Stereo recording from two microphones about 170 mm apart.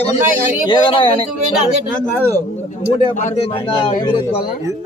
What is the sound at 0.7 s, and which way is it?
Speech, 30° left (ahead or behind).